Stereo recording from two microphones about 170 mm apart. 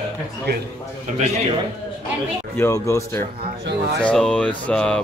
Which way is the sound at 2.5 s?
15° left (ahead or behind).